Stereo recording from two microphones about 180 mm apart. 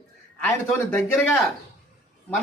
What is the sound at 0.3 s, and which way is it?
Speech, 10° left (ahead or behind).